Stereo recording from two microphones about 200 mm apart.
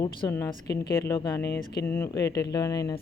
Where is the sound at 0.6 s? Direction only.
55° left (ahead or behind).